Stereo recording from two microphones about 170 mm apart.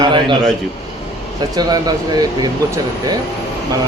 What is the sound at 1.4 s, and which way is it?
A man's voice, 25° right (ahead or behind).